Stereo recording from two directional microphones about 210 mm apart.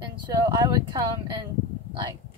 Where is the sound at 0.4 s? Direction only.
20° right (ahead or behind).